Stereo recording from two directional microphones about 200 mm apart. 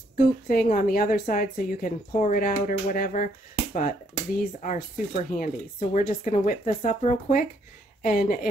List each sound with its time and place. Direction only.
0.7 s a woman's voice: 45° left (ahead or behind)